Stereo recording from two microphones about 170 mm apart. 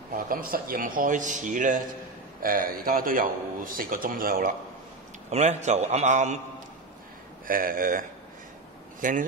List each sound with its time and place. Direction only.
0.1 s speech: 60° right (ahead or behind)
5.3 s speech: 40° right (ahead or behind)
7.4 s speech: 55° right (ahead or behind)
9.0 s speech: 55° right (ahead or behind)